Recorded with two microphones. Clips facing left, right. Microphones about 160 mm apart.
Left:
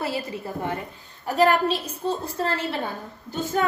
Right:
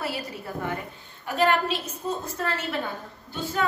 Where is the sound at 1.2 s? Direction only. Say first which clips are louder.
Left 3 dB; 40° left (ahead or behind).